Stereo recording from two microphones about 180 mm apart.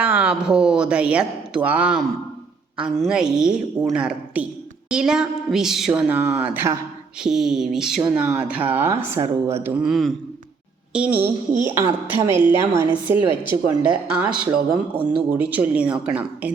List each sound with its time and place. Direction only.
0.0 s a woman's voice: 10° right (ahead or behind)
9.8 s a woman's voice: centre (ahead or behind)
14.5 s speech: 25° right (ahead or behind)
15.3 s speech: 10° right (ahead or behind)